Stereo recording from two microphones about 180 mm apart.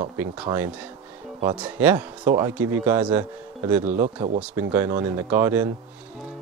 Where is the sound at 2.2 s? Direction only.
20° right (ahead or behind).